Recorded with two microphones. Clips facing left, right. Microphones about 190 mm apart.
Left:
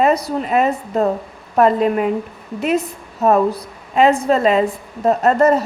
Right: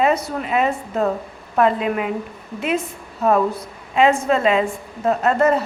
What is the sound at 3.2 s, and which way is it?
A woman's voice, 40° left (ahead or behind).